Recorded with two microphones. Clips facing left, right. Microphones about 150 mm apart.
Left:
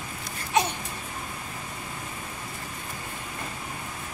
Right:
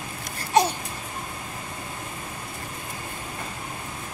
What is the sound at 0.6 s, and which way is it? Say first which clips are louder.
Babbling: right 4 dB; 35° right (ahead or behind).